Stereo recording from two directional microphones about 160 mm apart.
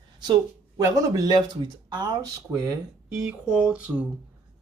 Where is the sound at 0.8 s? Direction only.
20° right (ahead or behind).